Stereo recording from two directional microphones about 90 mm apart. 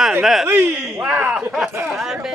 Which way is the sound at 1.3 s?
5° right (ahead or behind).